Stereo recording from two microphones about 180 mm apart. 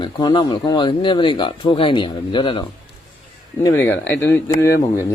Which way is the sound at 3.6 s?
10° left (ahead or behind).